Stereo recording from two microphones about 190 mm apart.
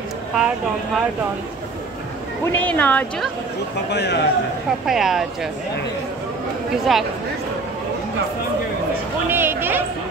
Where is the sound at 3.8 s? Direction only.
60° left (ahead or behind).